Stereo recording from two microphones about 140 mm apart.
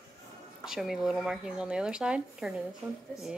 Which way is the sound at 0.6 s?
5° right (ahead or behind).